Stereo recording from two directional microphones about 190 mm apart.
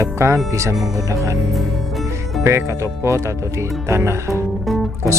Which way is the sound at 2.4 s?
15° right (ahead or behind).